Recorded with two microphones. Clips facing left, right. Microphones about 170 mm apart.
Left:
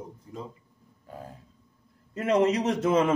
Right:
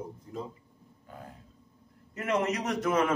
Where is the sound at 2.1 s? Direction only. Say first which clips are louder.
Left 6 dB; 30° left (ahead or behind).